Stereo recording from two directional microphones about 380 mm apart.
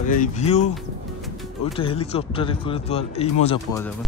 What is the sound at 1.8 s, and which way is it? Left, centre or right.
A man's voice, centre.